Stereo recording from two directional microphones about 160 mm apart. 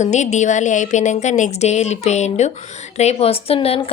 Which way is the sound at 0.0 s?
45° left (ahead or behind).